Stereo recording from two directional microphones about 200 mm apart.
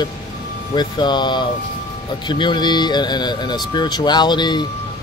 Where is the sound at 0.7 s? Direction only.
20° left (ahead or behind).